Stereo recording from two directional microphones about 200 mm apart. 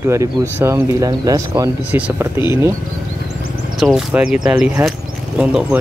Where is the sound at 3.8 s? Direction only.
5° right (ahead or behind).